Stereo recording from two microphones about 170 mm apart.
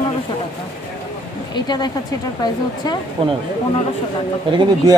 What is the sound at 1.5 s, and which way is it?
A woman's voice, 25° left (ahead or behind).